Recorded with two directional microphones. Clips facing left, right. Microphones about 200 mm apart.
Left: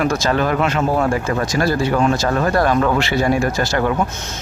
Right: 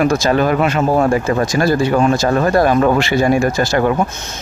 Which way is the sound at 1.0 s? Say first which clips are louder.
Right 4 dB; 20° right (ahead or behind).